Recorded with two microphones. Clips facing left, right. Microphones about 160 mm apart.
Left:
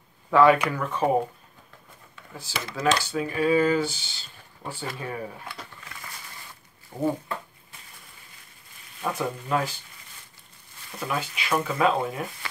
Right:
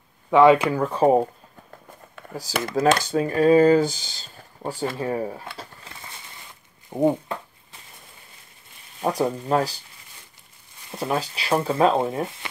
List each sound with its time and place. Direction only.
0.3 s speech: 20° right (ahead or behind)
2.3 s speech: 45° right (ahead or behind)
5.5 s a sound: 25° right (ahead or behind)
6.9 s speech: 20° right (ahead or behind)
9.0 s speech: 35° right (ahead or behind)
10.9 s speech: 30° right (ahead or behind)